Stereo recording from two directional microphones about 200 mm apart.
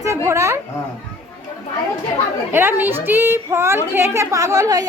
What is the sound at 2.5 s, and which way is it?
A woman's voice, 10° right (ahead or behind).